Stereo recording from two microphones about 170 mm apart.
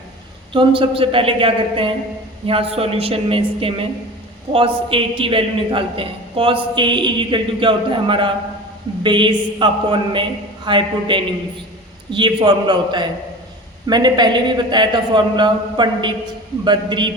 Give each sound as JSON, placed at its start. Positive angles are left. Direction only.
{"t": 0.5, "sound": "a woman's voice", "side_deg": -30}